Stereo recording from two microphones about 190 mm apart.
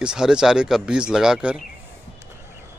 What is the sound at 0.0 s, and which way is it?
Speech, 5° right (ahead or behind).